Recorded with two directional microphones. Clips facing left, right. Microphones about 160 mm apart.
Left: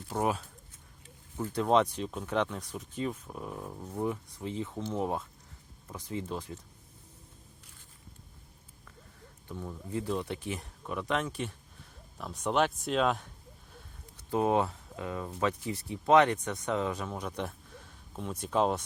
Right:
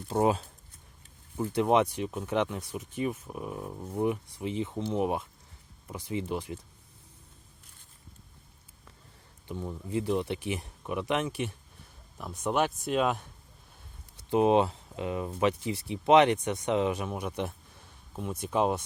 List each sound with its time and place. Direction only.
0.1 s speech: 20° right (ahead or behind)
9.5 s speech: 20° right (ahead or behind)
14.3 s speech: 20° right (ahead or behind)